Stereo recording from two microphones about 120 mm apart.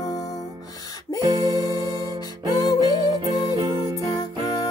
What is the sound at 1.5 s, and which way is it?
Music, 30° left (ahead or behind).